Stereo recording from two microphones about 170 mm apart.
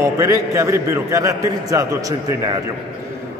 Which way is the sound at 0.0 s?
20° right (ahead or behind).